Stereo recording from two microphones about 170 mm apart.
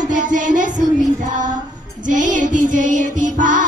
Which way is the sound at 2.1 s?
50° right (ahead or behind).